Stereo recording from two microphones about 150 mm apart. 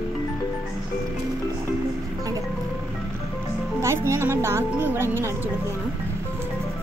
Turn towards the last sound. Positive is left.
turn(degrees=-15)  # may be behind; listen again after turning